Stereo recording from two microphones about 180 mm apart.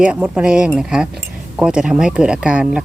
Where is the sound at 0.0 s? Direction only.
5° right (ahead or behind).